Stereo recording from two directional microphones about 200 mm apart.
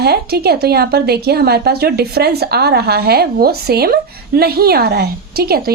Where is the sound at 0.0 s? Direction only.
50° right (ahead or behind).